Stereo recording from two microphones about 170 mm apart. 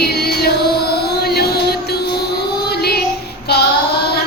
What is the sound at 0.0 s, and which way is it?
Music, 70° left (ahead or behind).